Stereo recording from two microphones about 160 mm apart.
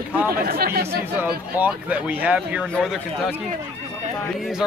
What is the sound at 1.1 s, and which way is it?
Speech, 10° right (ahead or behind).